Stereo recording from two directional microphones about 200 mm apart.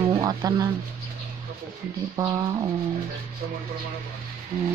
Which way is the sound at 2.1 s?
15° right (ahead or behind).